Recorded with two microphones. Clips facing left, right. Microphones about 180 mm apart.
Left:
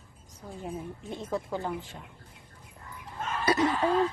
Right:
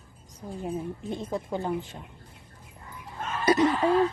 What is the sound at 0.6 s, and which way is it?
Speech, 20° right (ahead or behind).